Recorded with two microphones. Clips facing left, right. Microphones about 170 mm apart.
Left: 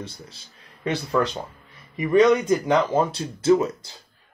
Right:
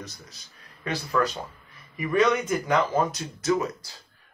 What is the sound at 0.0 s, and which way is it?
A man's voice, 30° left (ahead or behind).